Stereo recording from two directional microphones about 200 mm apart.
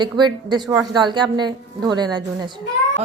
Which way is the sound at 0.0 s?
20° right (ahead or behind).